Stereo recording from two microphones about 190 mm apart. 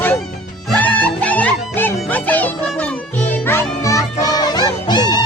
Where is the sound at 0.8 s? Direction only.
10° left (ahead or behind).